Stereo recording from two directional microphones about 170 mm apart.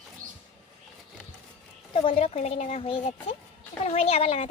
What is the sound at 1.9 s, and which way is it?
A woman's voice, 35° left (ahead or behind).